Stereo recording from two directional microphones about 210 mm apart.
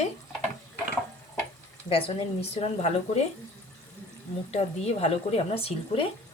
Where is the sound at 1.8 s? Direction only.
25° left (ahead or behind).